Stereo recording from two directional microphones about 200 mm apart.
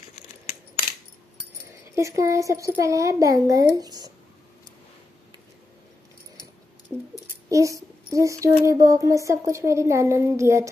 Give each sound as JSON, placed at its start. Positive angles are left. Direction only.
{"t": 2.0, "sound": "speech", "side_deg": -15}
{"t": 7.4, "sound": "speech", "side_deg": -15}